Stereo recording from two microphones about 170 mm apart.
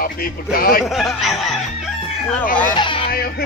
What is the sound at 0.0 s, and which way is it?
Speech, 60° left (ahead or behind).